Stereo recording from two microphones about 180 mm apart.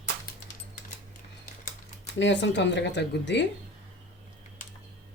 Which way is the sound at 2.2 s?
80° left.